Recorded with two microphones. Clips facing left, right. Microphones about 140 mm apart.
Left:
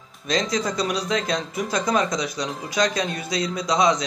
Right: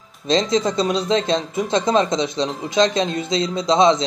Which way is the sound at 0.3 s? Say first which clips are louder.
Right 5 dB; 25° right (ahead or behind).